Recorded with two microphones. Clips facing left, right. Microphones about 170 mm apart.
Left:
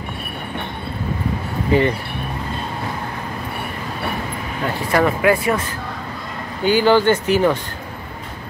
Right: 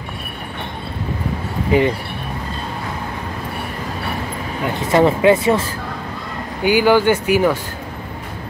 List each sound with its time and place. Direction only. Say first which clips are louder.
1.7 s speech: right 1 dB; 15° right (ahead or behind)
4.7 s speech: right 4 dB; 25° right (ahead or behind)
6.6 s speech: right 1 dB; 10° right (ahead or behind)